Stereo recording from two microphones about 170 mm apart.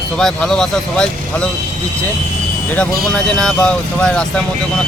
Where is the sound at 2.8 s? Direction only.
5° left (ahead or behind).